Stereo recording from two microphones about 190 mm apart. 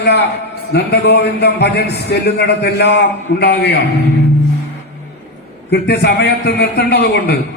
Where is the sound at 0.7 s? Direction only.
60° left (ahead or behind).